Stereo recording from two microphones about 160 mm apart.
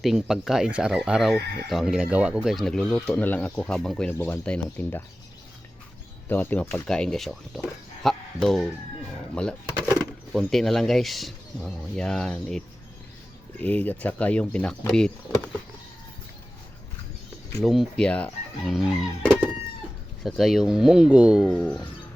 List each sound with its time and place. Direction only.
0.0 s speech: centre (ahead or behind)
6.2 s speech: 10° left (ahead or behind)
8.0 s a sound: centre (ahead or behind)
9.3 s speech: 5° left (ahead or behind)
17.6 s speech: centre (ahead or behind)
21.5 s speech: 10° left (ahead or behind)